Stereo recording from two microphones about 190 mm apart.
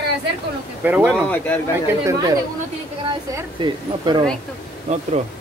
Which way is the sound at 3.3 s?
25° right (ahead or behind).